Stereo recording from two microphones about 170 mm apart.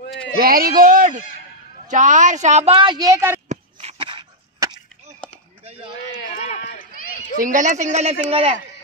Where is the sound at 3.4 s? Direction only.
45° right (ahead or behind).